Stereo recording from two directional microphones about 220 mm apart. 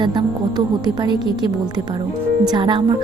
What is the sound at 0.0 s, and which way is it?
A woman's voice, 20° right (ahead or behind).